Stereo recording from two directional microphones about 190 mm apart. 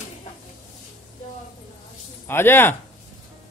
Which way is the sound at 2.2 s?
10° left (ahead or behind).